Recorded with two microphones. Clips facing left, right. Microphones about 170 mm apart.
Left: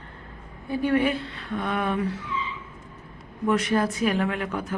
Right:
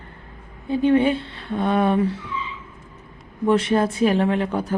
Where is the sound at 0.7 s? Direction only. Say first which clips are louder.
Right 5 dB; 25° right (ahead or behind).